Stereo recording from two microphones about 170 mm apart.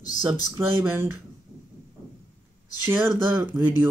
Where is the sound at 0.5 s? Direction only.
15° right (ahead or behind).